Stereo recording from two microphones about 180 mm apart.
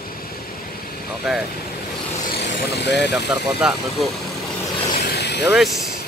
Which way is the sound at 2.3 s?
70° left (ahead or behind).